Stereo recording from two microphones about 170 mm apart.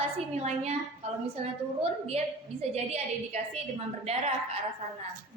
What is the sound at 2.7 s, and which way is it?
A woman's voice, 40° right (ahead or behind).